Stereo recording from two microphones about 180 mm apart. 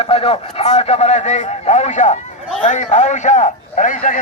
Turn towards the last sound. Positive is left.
turn(degrees=45)  # may be behind; listen again after turning